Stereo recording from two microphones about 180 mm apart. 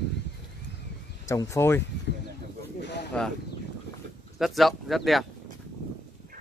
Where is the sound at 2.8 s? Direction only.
75° left (ahead or behind).